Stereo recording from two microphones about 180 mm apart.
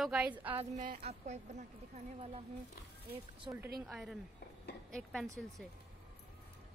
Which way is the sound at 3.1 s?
10° right (ahead or behind).